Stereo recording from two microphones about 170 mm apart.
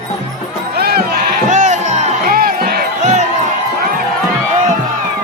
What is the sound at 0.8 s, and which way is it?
Music, 65° right (ahead or behind).